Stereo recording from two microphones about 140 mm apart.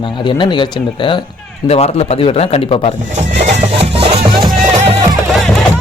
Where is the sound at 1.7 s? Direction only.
45° left (ahead or behind).